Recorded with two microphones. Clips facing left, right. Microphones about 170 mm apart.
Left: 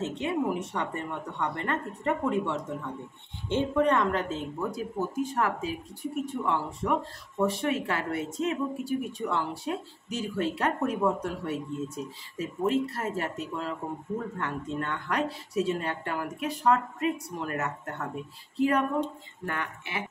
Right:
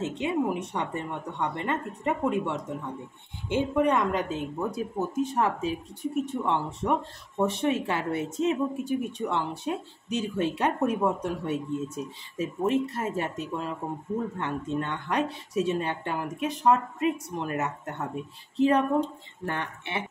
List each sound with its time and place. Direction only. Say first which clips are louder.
0.0 s a woman's voice: right 1 dB; 15° right (ahead or behind)